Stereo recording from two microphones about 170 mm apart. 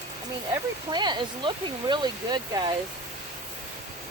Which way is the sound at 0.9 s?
25° right (ahead or behind).